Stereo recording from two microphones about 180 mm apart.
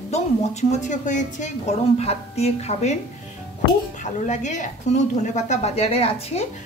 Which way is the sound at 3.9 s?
45° left (ahead or behind).